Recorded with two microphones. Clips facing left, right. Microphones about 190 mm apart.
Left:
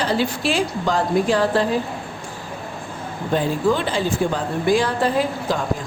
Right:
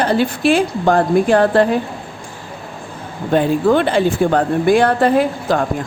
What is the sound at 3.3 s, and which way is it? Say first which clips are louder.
A woman's voice: right 6 dB; 60° right (ahead or behind).